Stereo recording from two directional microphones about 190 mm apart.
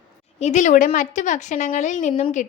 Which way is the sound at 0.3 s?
35° left (ahead or behind).